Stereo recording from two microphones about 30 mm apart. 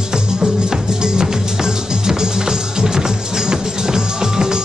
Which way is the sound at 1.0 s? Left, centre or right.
Centre.